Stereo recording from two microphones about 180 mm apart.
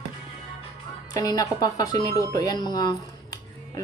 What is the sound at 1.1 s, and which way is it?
Speech, 20° left (ahead or behind).